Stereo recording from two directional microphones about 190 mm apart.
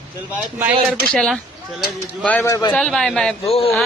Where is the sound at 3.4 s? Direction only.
30° left (ahead or behind).